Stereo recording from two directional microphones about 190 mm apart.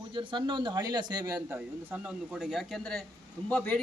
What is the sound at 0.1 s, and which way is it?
A man's voice, 25° right (ahead or behind).